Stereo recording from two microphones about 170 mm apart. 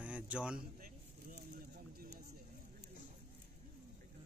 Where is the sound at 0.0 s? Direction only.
5° right (ahead or behind).